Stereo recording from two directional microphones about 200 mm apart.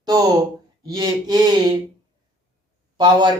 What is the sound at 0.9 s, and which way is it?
Speech, 20° right (ahead or behind).